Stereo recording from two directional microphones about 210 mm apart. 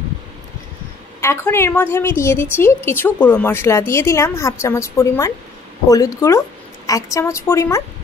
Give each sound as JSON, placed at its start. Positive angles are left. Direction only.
{"t": 1.2, "sound": "a woman's voice", "side_deg": 10}